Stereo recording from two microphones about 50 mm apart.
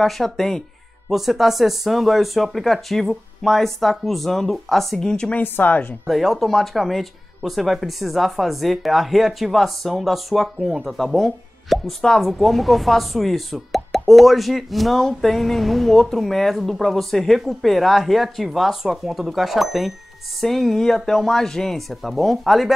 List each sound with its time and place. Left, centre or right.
0.0 s speech: centre
1.1 s speech: centre
5.4 s speech: left
6.0 s speech: centre